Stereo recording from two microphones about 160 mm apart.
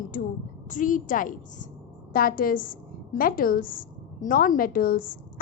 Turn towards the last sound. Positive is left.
turn(degrees=65)  # may be behind; listen again after turning